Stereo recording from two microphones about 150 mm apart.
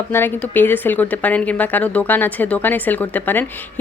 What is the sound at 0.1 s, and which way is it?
A woman's voice, 15° left (ahead or behind).